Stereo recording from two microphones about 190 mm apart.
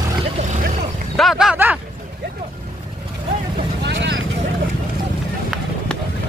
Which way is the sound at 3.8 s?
70° right (ahead or behind).